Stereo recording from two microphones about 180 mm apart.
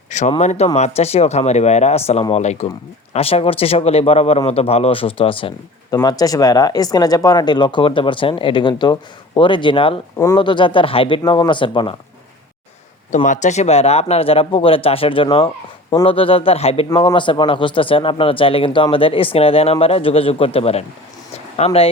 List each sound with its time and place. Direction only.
0.1 s speech: 40° left (ahead or behind)
13.1 s speech: 45° left (ahead or behind)